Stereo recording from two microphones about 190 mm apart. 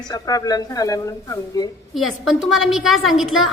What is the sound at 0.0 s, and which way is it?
A woman's voice, 20° left (ahead or behind).